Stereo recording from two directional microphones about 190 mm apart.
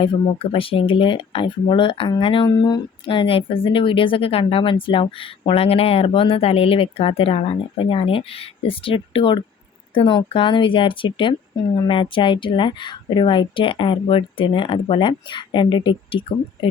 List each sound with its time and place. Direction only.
0.0 s speech: 30° left (ahead or behind)